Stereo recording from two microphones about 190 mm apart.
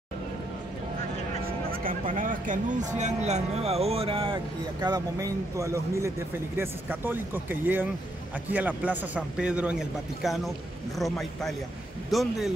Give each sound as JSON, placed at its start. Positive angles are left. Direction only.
{"t": 1.7, "sound": "speech", "side_deg": -50}